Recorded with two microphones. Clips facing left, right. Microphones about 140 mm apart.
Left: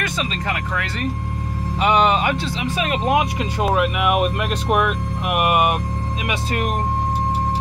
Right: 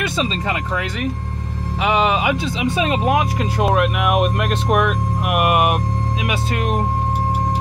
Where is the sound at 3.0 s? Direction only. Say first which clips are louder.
Right 1 dB; centre (ahead or behind).